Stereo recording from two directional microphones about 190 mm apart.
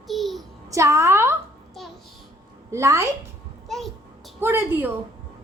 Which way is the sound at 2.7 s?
15° right (ahead or behind).